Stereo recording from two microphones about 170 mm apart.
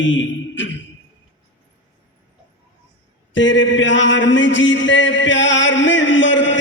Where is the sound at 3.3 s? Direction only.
90° left.